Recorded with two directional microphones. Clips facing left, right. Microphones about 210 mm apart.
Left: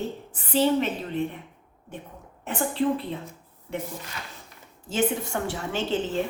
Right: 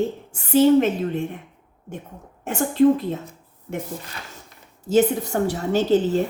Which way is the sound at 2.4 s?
45° right (ahead or behind).